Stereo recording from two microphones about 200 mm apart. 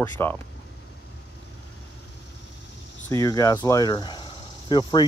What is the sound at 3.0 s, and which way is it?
Speech, 15° left (ahead or behind).